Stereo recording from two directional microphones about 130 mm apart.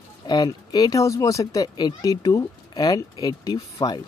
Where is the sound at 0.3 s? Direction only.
30° left (ahead or behind).